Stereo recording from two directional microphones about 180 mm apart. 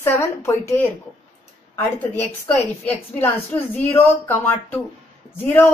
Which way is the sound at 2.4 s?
10° left (ahead or behind).